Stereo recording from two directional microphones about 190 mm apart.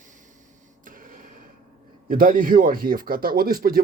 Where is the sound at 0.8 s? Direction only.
45° right (ahead or behind).